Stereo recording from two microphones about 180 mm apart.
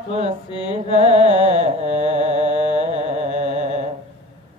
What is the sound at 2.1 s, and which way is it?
Music, 40° right (ahead or behind).